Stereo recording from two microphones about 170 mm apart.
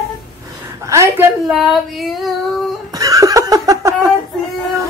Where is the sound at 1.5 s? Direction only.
Centre (ahead or behind).